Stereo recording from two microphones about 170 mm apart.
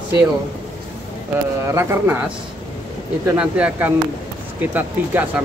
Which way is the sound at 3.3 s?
5° right (ahead or behind).